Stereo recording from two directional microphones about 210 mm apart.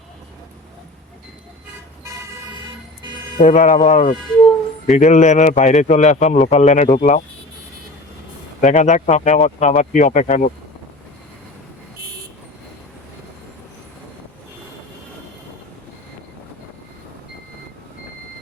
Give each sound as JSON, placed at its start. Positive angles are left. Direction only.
{"t": 3.3, "sound": "a man's voice", "side_deg": 35}
{"t": 8.6, "sound": "a man's voice", "side_deg": 35}